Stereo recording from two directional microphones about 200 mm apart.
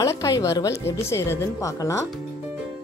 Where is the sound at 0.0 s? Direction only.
15° left (ahead or behind).